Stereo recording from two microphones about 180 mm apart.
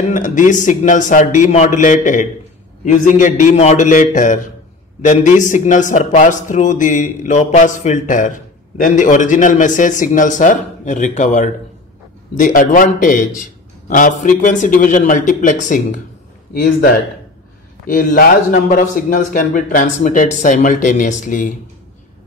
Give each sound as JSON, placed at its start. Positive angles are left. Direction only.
{"t": 0.1, "sound": "a man's voice", "side_deg": 45}